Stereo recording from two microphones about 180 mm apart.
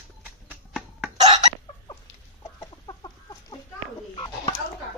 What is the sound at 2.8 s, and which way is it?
Chicken, 25° left (ahead or behind).